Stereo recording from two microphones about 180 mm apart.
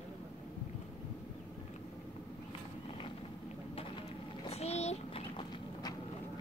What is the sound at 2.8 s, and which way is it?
Vehicle, 30° left (ahead or behind).